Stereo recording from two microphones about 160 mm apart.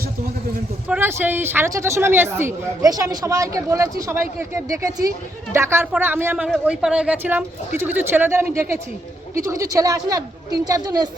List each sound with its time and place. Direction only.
0.9 s speech: 10° right (ahead or behind)